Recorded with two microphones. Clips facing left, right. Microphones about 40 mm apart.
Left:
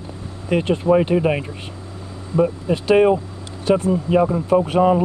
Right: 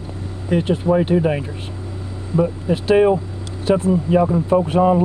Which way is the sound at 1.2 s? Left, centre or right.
Centre.